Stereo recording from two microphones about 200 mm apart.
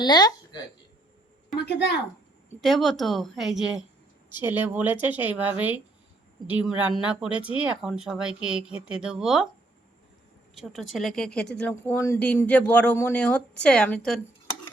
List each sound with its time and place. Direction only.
0.0 s speech: 20° left (ahead or behind)
2.6 s speech: centre (ahead or behind)
10.5 s speech: centre (ahead or behind)